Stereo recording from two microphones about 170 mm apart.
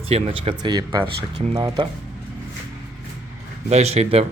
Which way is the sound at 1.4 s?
35° right (ahead or behind).